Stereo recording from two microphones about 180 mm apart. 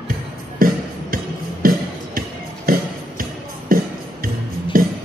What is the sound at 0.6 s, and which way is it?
Music, 50° right (ahead or behind).